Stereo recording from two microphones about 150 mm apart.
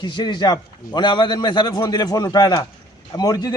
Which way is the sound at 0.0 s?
30° left (ahead or behind).